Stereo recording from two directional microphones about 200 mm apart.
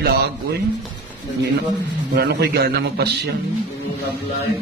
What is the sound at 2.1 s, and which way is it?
A man's voice, 55° right (ahead or behind).